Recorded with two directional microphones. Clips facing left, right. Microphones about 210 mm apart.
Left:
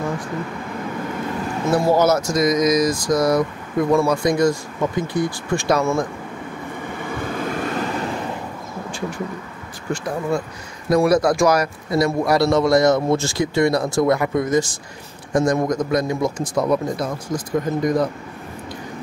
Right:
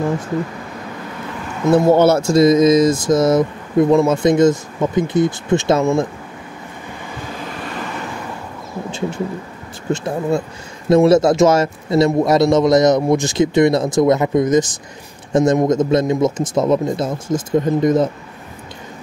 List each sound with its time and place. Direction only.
1.7 s speech: 25° right (ahead or behind)
7.0 s vehicle: 50° left (ahead or behind)
9.8 s speech: 25° right (ahead or behind)